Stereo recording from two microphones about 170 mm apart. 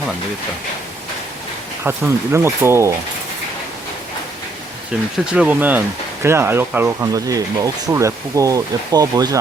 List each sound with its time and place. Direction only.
1.8 s speech: 15° right (ahead or behind)
4.9 s speech: 5° right (ahead or behind); by 9.4 s 20° right (ahead or behind)